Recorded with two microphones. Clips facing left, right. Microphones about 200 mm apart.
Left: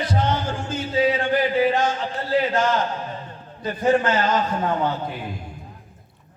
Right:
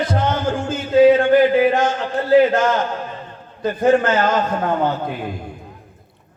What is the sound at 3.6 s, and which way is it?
A man's voice, 50° right (ahead or behind).